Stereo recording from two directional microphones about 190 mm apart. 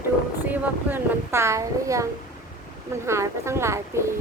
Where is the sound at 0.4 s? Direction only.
10° right (ahead or behind).